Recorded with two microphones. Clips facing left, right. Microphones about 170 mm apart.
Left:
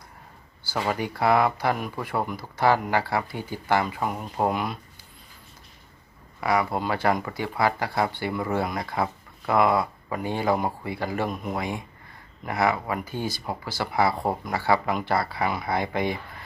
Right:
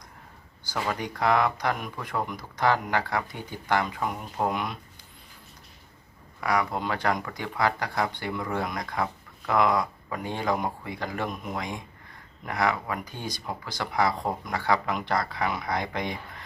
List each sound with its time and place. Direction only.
0.7 s speech: 10° left (ahead or behind)
6.4 s speech: 5° left (ahead or behind)
7.1 s speech: 25° left (ahead or behind)
7.3 s speech: 10° left (ahead or behind)
8.3 s speech: 30° left (ahead or behind)
8.5 s speech: 5° left (ahead or behind)